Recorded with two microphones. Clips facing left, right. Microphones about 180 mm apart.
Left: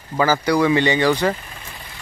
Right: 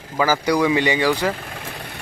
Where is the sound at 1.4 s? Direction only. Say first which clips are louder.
Right 6 dB; 70° right (ahead or behind).